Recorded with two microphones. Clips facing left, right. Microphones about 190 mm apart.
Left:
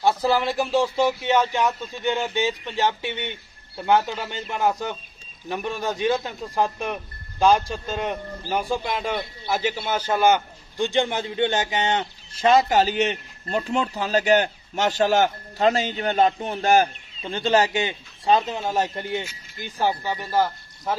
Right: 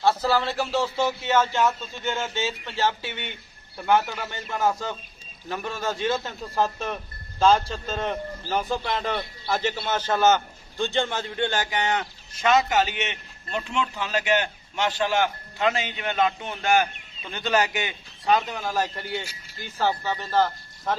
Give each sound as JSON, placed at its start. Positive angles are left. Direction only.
{"t": 0.0, "sound": "speech", "side_deg": 15}